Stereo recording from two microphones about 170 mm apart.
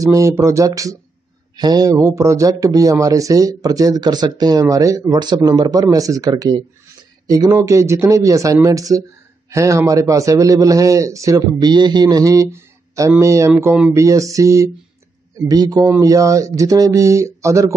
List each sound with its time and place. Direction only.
0.0 s speech: 20° right (ahead or behind)